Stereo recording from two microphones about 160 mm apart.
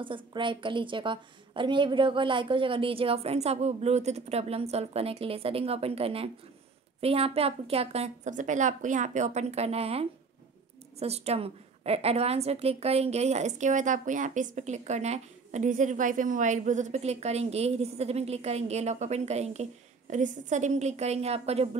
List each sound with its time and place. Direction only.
0.0 s a woman's voice: 30° right (ahead or behind)